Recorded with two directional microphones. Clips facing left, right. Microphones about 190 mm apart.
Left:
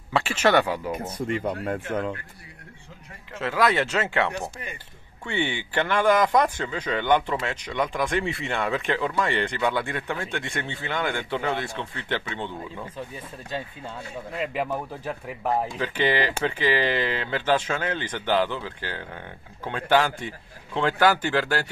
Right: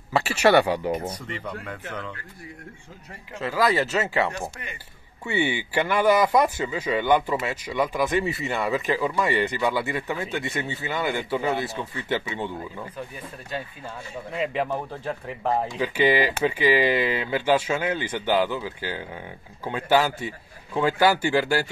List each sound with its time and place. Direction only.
0.1 s speech: 5° right (ahead or behind)
1.1 s speech: 50° left (ahead or behind)
3.3 s speech: centre (ahead or behind)
12.9 s speech: 25° left (ahead or behind)
14.4 s speech: 5° left (ahead or behind)
15.8 s speech: 10° right (ahead or behind)